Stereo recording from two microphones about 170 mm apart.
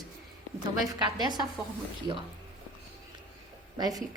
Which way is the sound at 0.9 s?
25° right (ahead or behind).